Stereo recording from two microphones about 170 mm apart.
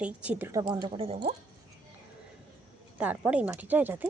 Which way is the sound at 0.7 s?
30° right (ahead or behind).